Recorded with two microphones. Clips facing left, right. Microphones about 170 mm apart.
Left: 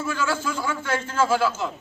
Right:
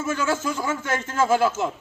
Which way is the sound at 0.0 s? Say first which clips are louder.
Right 2 dB; 45° right (ahead or behind).